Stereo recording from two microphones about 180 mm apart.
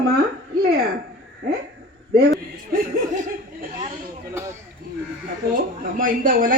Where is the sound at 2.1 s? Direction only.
60° right (ahead or behind).